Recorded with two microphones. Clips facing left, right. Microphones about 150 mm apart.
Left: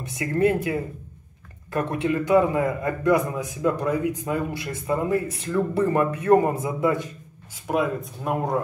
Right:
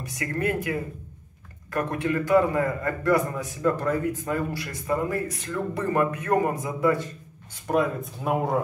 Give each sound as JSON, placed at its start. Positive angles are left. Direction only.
{"t": 0.0, "sound": "a man's voice", "side_deg": 25}
{"t": 7.6, "sound": "speech", "side_deg": 5}